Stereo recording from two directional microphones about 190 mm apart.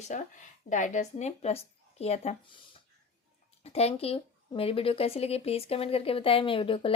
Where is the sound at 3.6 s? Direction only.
35° left (ahead or behind).